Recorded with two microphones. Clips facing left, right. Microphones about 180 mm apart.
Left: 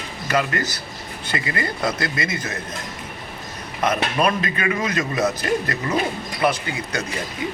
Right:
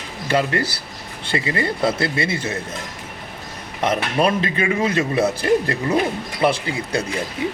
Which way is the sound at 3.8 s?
30° right (ahead or behind).